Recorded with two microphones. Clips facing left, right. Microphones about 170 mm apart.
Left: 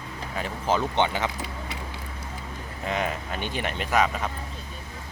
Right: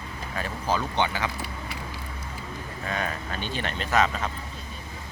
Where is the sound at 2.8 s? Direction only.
20° left (ahead or behind).